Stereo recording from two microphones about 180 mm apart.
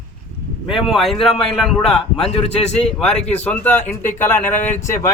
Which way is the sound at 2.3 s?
35° left (ahead or behind).